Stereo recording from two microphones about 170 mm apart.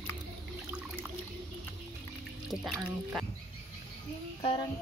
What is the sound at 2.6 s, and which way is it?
Speech, centre (ahead or behind).